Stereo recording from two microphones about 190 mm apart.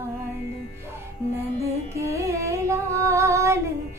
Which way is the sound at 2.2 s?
15° right (ahead or behind).